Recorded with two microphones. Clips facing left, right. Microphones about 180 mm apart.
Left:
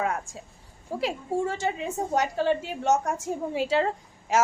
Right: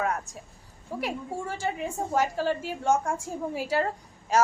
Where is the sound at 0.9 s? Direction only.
25° left (ahead or behind).